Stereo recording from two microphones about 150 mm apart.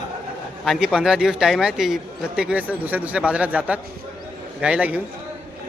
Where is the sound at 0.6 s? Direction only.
Centre (ahead or behind).